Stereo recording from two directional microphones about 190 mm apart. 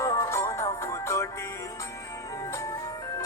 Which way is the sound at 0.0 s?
15° left (ahead or behind).